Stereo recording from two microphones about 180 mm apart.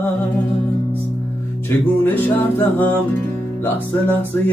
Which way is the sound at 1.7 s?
10° left (ahead or behind).